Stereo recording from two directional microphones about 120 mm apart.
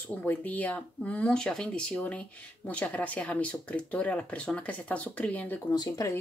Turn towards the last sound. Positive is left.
turn(degrees=30)  # may be behind; listen again after turning